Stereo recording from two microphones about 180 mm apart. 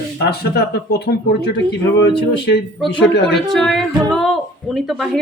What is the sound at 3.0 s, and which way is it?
Speech, 75° left (ahead or behind).